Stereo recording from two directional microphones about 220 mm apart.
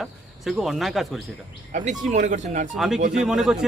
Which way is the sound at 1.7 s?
35° right (ahead or behind).